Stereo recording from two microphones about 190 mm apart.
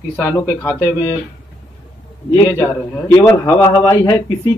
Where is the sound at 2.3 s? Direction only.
15° left (ahead or behind).